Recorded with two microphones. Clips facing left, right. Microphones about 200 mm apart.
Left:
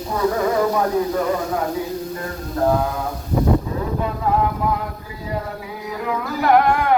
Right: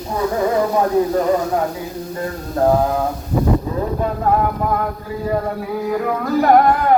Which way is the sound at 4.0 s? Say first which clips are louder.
Right 2 dB; 45° right (ahead or behind).